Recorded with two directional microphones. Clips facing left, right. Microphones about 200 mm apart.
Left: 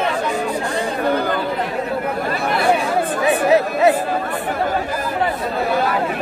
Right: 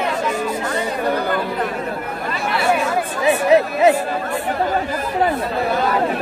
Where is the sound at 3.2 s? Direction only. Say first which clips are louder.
Right 2 dB; 20° right (ahead or behind).